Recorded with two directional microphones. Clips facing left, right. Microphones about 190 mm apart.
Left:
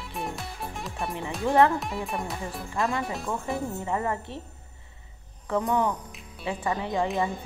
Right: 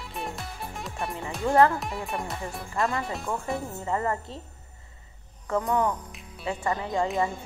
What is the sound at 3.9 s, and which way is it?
Speech, 10° left (ahead or behind).